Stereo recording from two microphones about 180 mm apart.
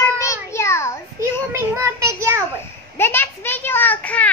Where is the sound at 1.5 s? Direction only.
15° right (ahead or behind).